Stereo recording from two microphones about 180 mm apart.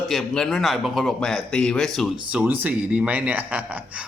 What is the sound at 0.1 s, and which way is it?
A man's voice, centre (ahead or behind).